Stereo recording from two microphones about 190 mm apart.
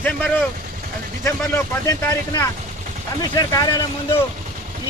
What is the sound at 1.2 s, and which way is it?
Speech, 15° left (ahead or behind).